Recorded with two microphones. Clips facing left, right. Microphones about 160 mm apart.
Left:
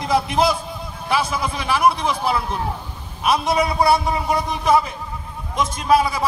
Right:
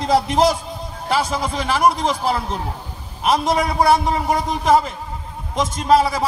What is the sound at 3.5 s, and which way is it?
A man's voice, 50° right (ahead or behind).